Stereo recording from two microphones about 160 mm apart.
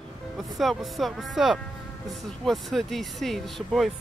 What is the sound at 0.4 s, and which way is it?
Speech, centre (ahead or behind).